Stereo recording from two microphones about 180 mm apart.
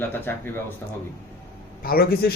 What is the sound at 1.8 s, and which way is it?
Speech, 55° left (ahead or behind).